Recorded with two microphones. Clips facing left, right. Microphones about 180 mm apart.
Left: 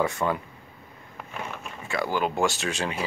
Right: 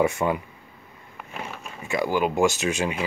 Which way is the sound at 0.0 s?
20° right (ahead or behind).